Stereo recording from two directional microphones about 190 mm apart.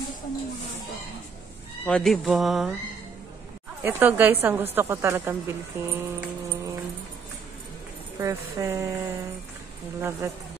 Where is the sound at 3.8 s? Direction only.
10° right (ahead or behind).